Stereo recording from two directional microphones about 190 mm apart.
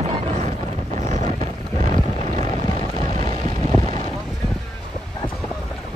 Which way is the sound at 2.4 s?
25° left (ahead or behind).